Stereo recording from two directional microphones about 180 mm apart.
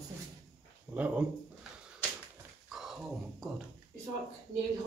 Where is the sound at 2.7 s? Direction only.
Centre (ahead or behind).